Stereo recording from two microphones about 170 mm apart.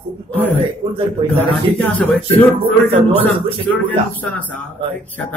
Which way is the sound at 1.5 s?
10° left (ahead or behind).